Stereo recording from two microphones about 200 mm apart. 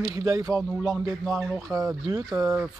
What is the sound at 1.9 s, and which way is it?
Speech, 15° right (ahead or behind).